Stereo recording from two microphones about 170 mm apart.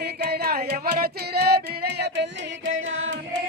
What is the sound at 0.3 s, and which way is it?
Music, 65° right (ahead or behind).